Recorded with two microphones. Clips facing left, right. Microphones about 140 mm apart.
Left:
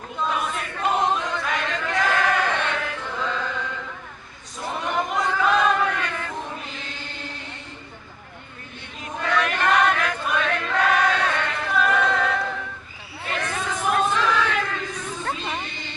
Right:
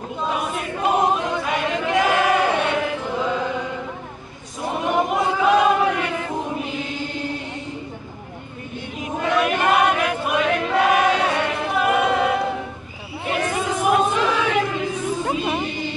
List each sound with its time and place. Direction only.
0.2 s choir: 15° right (ahead or behind)
4.6 s chant: 15° right (ahead or behind)
9.0 s choir: 15° right (ahead or behind)